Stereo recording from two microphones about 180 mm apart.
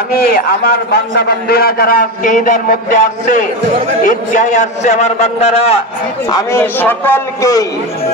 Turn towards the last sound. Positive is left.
turn(degrees=15)  # may be behind; listen again after turning